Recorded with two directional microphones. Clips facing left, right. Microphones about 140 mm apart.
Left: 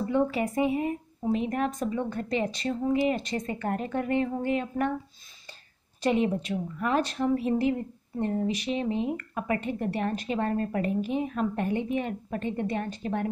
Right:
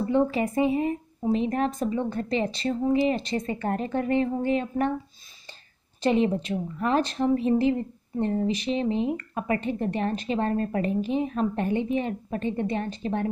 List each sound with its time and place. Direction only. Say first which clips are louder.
0.1 s speech: right 3 dB; 30° right (ahead or behind)
6.0 s speech: right 3 dB; 30° right (ahead or behind)